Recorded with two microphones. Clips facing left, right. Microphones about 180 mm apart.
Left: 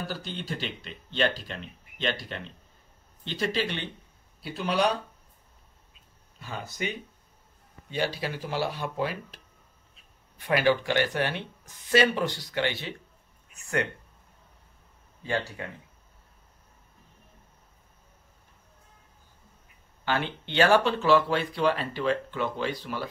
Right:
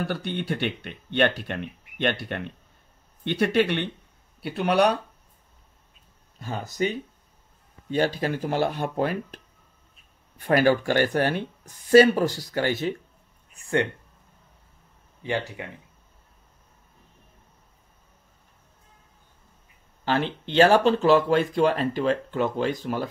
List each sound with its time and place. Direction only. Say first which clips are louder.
0.0 s speech: right 7 dB; 65° right (ahead or behind)
6.4 s speech: right 7 dB; 40° right (ahead or behind)
13.6 s speech: right 5 dB; 30° right (ahead or behind)
15.2 s speech: right 2 dB; 15° right (ahead or behind)
20.1 s speech: right 4 dB; 35° right (ahead or behind)